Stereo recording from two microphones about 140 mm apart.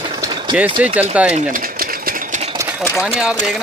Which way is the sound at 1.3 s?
80° right.